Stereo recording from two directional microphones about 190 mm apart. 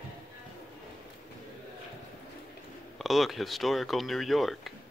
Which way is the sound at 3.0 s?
Centre (ahead or behind).